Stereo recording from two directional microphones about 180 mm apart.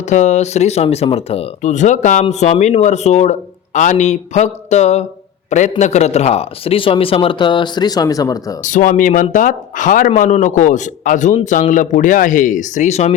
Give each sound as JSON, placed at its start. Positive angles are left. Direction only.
{"t": 0.1, "sound": "a man's voice", "side_deg": 40}
{"t": 8.6, "sound": "a man's voice", "side_deg": 45}